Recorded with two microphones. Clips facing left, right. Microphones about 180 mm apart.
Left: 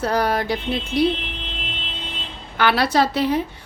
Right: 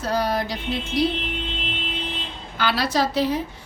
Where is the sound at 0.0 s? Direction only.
60° left (ahead or behind).